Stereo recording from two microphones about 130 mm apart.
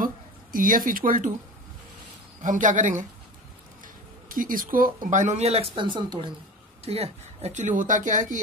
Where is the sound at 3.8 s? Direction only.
90° right; by 5.7 s 55° right (ahead or behind).